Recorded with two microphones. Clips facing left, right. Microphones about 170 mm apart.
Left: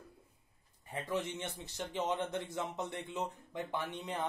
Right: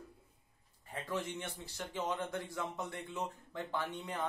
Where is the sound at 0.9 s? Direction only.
20° left (ahead or behind).